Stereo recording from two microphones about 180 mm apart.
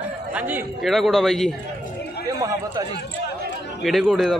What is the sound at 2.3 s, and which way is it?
Speech, 20° right (ahead or behind).